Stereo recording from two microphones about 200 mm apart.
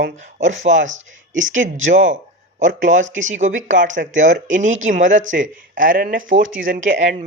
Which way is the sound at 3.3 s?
40° right (ahead or behind).